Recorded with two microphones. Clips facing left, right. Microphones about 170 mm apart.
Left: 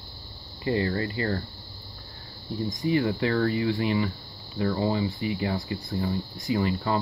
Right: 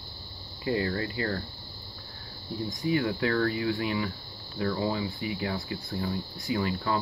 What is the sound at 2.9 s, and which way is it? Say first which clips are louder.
Speech: left 2 dB; centre (ahead or behind).